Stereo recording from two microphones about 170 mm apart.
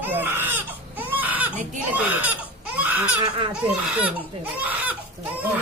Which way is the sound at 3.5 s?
10° right (ahead or behind).